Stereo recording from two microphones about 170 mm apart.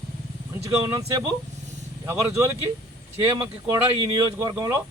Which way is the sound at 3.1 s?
15° right (ahead or behind).